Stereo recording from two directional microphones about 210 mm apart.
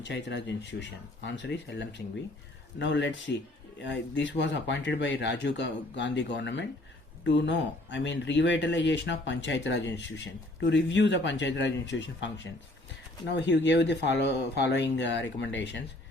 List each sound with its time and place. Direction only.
0.0 s speech: 55° left (ahead or behind)
13.3 s speech: 55° left (ahead or behind)